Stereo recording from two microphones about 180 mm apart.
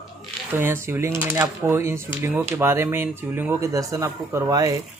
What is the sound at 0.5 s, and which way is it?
Speech, 15° right (ahead or behind).